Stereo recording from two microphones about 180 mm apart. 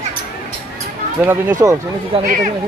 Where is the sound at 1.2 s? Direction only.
10° right (ahead or behind).